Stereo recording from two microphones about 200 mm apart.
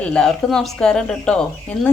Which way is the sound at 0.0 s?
5° left (ahead or behind).